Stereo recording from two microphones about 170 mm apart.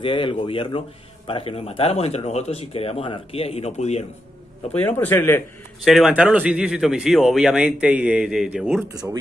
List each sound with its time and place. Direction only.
0.0 s a man's voice: 30° left (ahead or behind)
4.7 s speech: 10° left (ahead or behind)
5.9 s speech: centre (ahead or behind)